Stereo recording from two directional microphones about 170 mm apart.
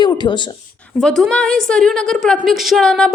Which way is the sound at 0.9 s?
Centre (ahead or behind).